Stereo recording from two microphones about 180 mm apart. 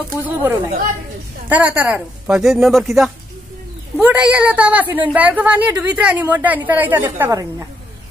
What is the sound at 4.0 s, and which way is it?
A woman's voice, 10° right (ahead or behind).